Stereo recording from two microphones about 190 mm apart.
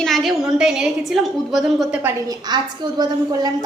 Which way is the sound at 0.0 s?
Centre (ahead or behind).